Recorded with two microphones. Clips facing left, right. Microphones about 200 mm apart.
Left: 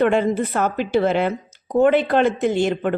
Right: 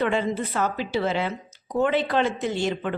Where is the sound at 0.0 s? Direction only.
50° left (ahead or behind).